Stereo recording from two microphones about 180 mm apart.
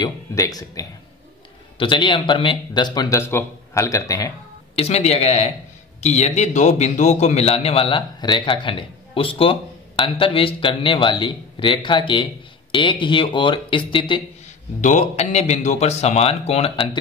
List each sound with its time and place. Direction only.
0.0 s a man's voice: 20° left (ahead or behind)
4.7 s a man's voice: 35° left (ahead or behind)
14.8 s speech: 45° left (ahead or behind); by 17.0 s 30° left (ahead or behind)